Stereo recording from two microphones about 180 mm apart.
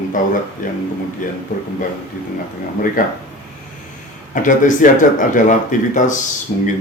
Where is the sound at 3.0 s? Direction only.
50° left (ahead or behind).